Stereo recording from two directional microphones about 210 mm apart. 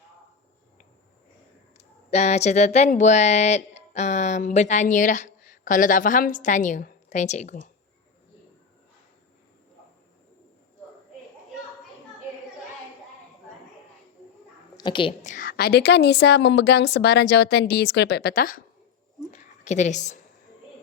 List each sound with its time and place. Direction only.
1.8 s speech: 30° left (ahead or behind)
14.8 s a woman's voice: 25° left (ahead or behind)
15.2 s a woman's voice: 40° left (ahead or behind)
19.3 s a sound: 35° left (ahead or behind)